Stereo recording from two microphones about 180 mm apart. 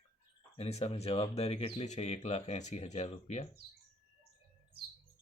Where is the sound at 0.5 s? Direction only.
35° left (ahead or behind).